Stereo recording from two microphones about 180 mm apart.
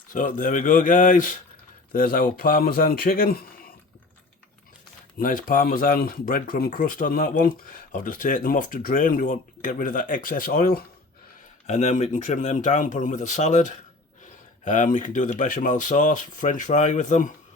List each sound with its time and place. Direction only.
0.1 s speech: 50° left (ahead or behind)
5.1 s speech: 50° left (ahead or behind)
11.6 s speech: 40° left (ahead or behind)